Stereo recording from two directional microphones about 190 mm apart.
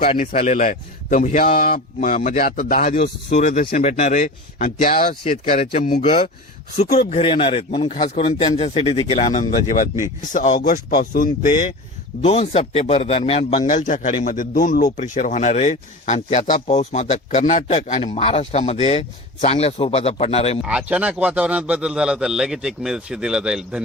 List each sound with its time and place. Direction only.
0.3 s speech: 35° left (ahead or behind)
5.5 s speech: 35° left (ahead or behind)
12.2 s speech: 35° left (ahead or behind)
20.7 s a man's voice: 5° right (ahead or behind)